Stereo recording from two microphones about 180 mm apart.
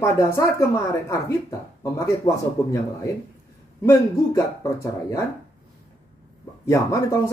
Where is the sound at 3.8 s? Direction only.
15° left (ahead or behind).